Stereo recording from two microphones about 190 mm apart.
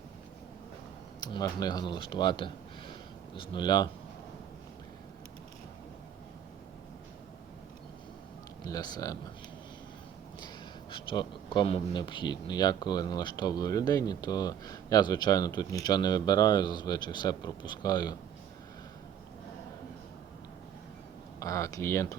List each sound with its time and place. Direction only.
1.2 s speech: 20° left (ahead or behind)
8.6 s speech: 20° left (ahead or behind)
10.9 s speech: 25° left (ahead or behind)
21.3 s speech: 15° left (ahead or behind)